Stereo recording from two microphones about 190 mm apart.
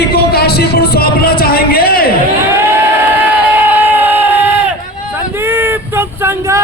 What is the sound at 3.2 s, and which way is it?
Crowd, 10° right (ahead or behind).